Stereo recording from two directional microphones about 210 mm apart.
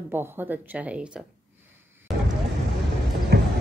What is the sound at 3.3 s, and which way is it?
Clip-clop, 50° right (ahead or behind).